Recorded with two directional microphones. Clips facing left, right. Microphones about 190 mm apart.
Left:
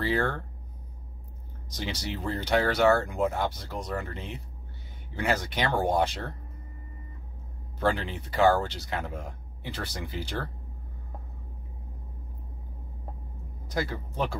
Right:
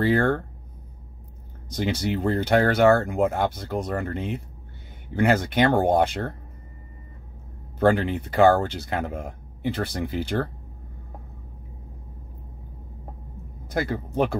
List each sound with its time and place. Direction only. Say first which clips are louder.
0.0 s speech: right 7 dB; 50° right (ahead or behind)
1.8 s speech: right 9 dB; 55° right (ahead or behind)
7.8 s speech: right 8 dB; 50° right (ahead or behind)
13.7 s speech: right 6 dB; 55° right (ahead or behind)